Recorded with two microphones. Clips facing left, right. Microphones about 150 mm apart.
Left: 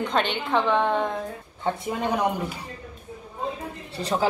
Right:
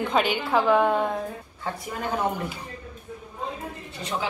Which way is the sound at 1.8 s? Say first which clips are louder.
Left 2 dB; 20° left (ahead or behind).